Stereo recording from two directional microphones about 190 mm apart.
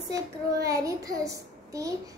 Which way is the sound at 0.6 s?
15° right (ahead or behind).